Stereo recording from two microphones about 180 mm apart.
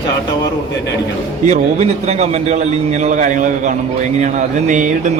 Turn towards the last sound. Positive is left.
turn(degrees=-45)  # may be behind; listen again after turning